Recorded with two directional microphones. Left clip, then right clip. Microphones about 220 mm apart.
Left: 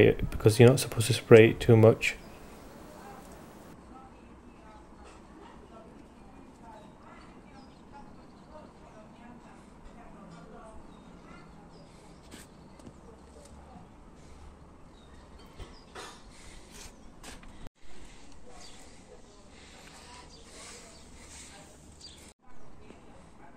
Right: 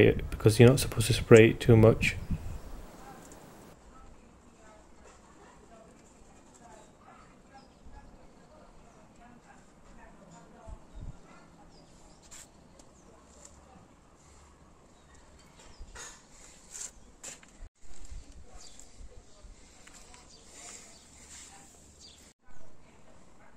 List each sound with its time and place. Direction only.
0.0 s speech: centre (ahead or behind)